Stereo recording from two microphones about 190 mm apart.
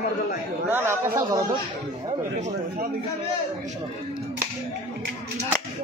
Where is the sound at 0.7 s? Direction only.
10° right (ahead or behind).